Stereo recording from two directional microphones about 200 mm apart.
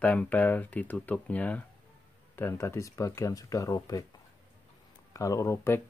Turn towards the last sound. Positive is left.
turn(degrees=15)  # may be behind; listen again after turning